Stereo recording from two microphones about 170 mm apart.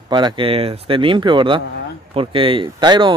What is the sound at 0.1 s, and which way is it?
Speech, 30° right (ahead or behind).